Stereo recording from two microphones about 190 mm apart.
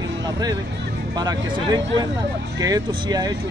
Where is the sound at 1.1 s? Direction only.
20° right (ahead or behind).